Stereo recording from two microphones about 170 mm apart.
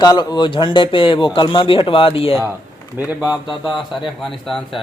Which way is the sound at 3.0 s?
10° right (ahead or behind).